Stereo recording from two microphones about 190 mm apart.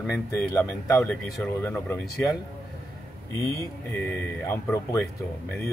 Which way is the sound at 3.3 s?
15° left (ahead or behind).